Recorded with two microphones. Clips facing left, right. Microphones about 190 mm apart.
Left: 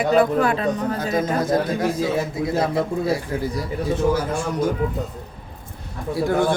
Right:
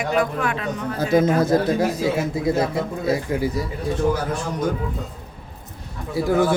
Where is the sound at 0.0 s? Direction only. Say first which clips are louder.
Left 5 dB; 35° left (ahead or behind).